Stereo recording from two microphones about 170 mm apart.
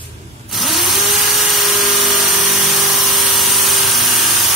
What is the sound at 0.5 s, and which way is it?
Tools, centre (ahead or behind).